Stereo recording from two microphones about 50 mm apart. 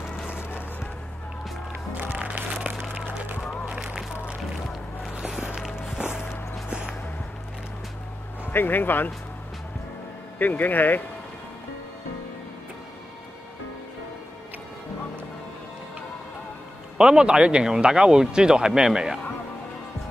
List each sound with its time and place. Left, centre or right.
0.3 s music: left
2.0 s music: right
5.4 s walk: centre
6.7 s a sound: centre
8.5 s speech: left
10.4 s speech: left
17.0 s speech: centre